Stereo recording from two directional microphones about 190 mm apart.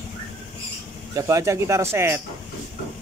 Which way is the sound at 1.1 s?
15° right (ahead or behind).